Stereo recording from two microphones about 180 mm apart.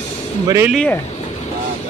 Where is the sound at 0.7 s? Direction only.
5° left (ahead or behind).